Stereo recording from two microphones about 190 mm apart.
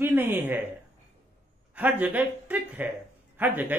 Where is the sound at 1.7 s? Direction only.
10° right (ahead or behind).